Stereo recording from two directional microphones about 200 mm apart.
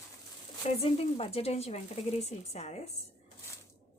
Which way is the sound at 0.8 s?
30° left (ahead or behind).